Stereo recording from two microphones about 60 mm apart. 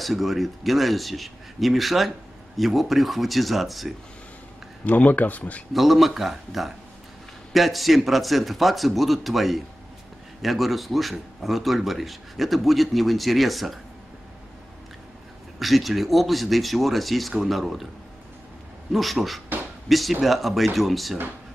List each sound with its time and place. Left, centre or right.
0.0 s speech: centre
4.8 s a man's voice: left
5.7 s speech: centre
15.6 s speech: centre
18.9 s speech: centre